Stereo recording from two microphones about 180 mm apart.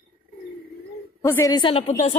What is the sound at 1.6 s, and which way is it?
Speech, 30° left (ahead or behind).